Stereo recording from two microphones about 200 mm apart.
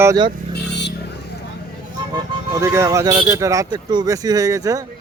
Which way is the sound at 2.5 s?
15° right (ahead or behind).